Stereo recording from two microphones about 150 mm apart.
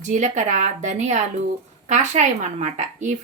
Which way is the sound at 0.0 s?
55° right (ahead or behind).